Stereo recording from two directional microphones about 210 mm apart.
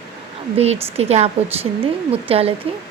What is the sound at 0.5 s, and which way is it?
A woman's voice, 30° right (ahead or behind).